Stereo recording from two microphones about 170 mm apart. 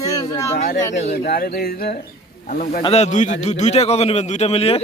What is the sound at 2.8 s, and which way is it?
A man's voice, 40° left (ahead or behind).